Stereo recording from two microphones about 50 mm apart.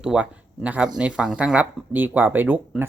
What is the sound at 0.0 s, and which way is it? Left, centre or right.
Speech, centre.